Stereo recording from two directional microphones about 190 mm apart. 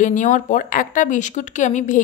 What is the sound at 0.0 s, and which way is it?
Speech, 40° left (ahead or behind).